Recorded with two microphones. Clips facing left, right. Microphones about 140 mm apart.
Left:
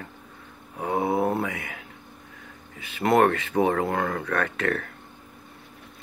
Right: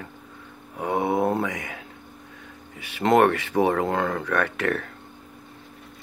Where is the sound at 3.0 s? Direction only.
15° right (ahead or behind).